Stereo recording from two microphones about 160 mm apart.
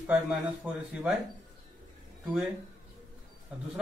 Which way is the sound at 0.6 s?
5° right (ahead or behind).